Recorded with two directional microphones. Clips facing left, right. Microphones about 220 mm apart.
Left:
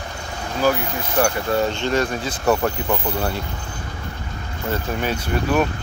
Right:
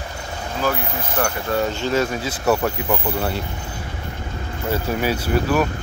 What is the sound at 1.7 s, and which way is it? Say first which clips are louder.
Speech: even; 5° right (ahead or behind).